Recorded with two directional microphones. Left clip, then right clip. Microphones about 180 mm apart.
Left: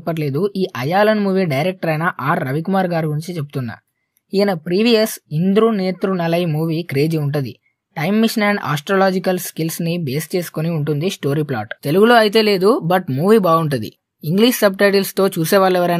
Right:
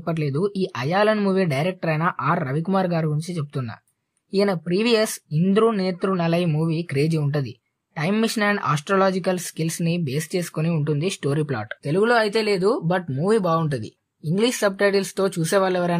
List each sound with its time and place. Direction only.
0.0 s speech: 30° left (ahead or behind)
11.8 s speech: 50° left (ahead or behind)